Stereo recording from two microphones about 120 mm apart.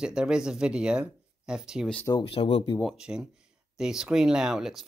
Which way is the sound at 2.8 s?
5° right (ahead or behind).